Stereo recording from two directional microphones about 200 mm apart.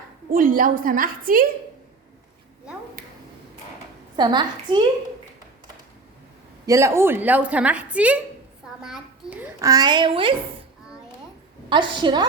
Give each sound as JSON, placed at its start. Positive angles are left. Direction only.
{"t": 0.3, "sound": "a woman's voice", "side_deg": -45}
{"t": 3.0, "sound": "finger snapping", "side_deg": -45}
{"t": 4.2, "sound": "a woman's voice", "side_deg": -20}
{"t": 6.7, "sound": "a woman's voice", "side_deg": -15}
{"t": 11.7, "sound": "a woman's voice", "side_deg": -25}